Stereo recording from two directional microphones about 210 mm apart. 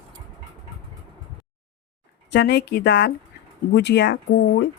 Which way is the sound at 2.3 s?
55° left (ahead or behind).